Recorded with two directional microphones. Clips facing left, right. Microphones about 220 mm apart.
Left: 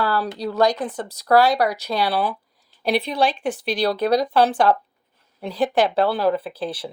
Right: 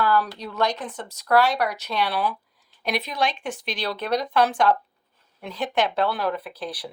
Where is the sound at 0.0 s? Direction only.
35° left (ahead or behind).